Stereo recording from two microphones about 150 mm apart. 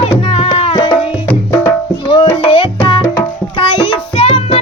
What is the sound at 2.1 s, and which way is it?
Music, 35° left (ahead or behind).